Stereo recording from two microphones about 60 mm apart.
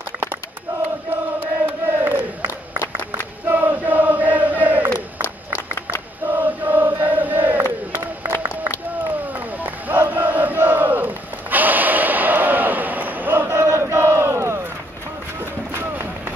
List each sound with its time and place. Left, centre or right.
1.1 s chant: right
3.4 s chant: right
6.2 s chant: right
9.6 s battle cry: right
11.5 s a sound: right
15.7 s run: right